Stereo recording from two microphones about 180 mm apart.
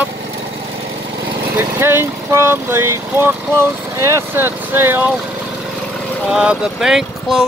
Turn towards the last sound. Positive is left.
turn(degrees=0)  # may be behind; listen again after turning